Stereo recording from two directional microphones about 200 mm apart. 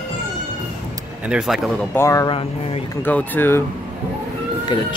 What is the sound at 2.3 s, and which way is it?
Speech, 30° left (ahead or behind).